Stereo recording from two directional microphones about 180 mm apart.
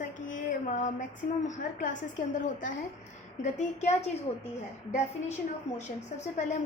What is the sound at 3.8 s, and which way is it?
Speech, 40° left (ahead or behind).